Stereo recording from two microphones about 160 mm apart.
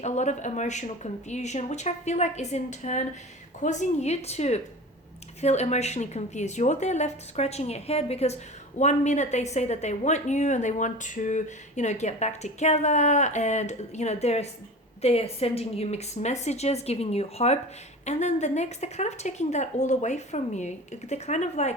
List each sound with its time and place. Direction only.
0.0 s a woman's voice: 45° left (ahead or behind)